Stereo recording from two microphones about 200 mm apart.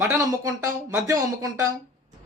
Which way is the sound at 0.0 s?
15° right (ahead or behind).